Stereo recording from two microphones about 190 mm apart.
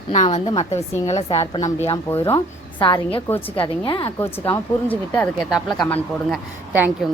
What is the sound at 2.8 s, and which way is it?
Speech, 25° left (ahead or behind).